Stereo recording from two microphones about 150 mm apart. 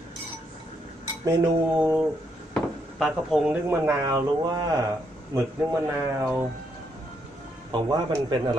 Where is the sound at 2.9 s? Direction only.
Centre (ahead or behind).